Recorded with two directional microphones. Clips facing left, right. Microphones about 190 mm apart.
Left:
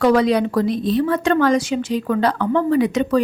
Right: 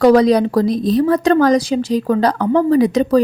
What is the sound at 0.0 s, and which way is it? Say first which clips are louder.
A woman's voice: right 5 dB; 40° right (ahead or behind).